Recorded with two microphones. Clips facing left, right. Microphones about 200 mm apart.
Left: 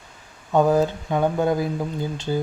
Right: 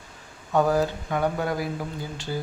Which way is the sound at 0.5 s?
20° left (ahead or behind).